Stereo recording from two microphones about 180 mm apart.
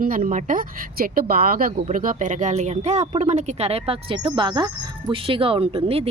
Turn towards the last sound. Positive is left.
turn(degrees=-35)  # may be behind; listen again after turning